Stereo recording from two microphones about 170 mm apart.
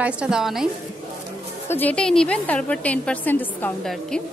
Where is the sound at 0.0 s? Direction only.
5° right (ahead or behind).